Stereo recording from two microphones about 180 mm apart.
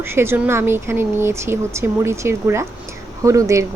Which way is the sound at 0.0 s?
15° right (ahead or behind).